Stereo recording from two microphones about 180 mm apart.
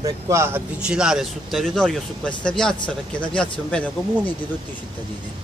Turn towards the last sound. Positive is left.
turn(degrees=5)  # may be behind; listen again after turning